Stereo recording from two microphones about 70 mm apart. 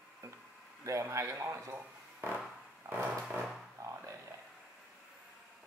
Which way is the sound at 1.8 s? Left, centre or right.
Right.